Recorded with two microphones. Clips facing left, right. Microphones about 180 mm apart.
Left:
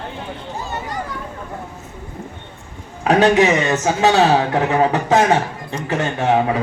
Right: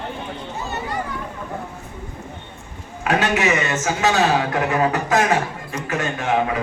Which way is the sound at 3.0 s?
35° left (ahead or behind).